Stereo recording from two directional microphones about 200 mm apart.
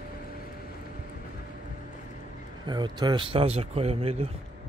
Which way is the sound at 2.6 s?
20° right (ahead or behind).